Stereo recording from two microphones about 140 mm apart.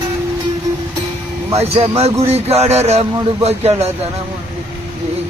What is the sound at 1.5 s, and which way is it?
A man's voice, 45° right (ahead or behind).